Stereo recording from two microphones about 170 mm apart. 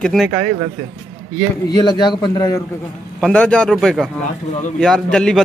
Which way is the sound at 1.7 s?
25° left (ahead or behind).